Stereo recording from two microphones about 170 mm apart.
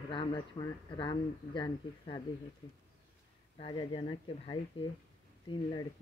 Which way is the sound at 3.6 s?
30° left (ahead or behind).